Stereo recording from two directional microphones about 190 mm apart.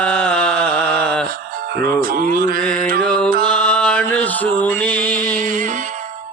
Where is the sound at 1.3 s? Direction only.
50° right (ahead or behind).